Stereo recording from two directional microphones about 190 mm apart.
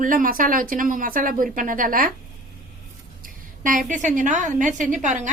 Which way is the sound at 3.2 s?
45° right (ahead or behind).